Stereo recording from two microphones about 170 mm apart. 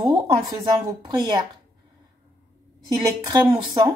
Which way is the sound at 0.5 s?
25° right (ahead or behind).